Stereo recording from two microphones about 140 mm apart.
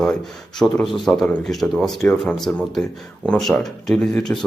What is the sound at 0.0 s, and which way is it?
Speech, 5° left (ahead or behind).